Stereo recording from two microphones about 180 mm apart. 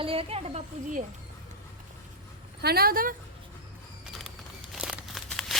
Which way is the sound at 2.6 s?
60° right (ahead or behind).